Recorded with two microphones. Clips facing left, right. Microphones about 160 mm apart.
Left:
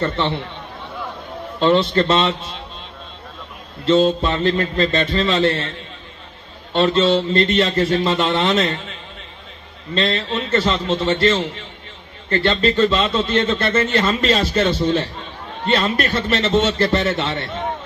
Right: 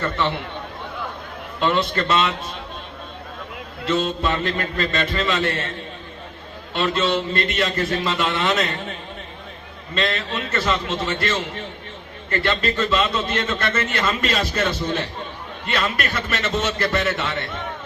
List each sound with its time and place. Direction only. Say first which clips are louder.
1.5 s speech: left 6 dB; 30° left (ahead or behind)
3.8 s speech: left 6 dB; 30° left (ahead or behind)
6.7 s speech: left 6 dB; 30° left (ahead or behind)
9.9 s speech: left 4 dB; 30° left (ahead or behind)